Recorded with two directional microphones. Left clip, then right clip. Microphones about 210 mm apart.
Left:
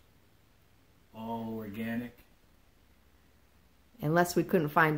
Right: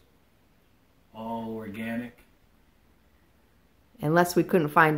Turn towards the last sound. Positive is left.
turn(degrees=0)  # may be behind; listen again after turning